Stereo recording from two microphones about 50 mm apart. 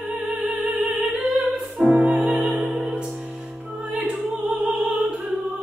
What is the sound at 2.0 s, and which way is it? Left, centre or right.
Music, right.